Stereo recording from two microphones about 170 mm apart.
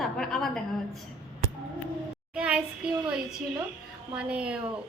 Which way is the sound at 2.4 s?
5° right (ahead or behind).